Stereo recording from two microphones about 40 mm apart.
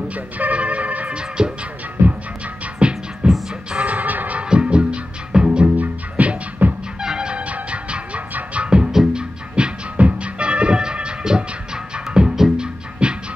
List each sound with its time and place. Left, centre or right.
0.1 s music: right
1.1 s music: right
2.0 s music: right
2.8 s music: right
3.8 s music: right
4.4 s music: right
5.8 s music: right
7.0 s music: centre
7.3 s music: right
9.9 s music: right